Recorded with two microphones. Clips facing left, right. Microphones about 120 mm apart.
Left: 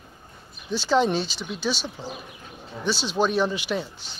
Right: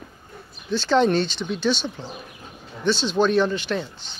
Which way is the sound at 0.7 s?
10° left (ahead or behind).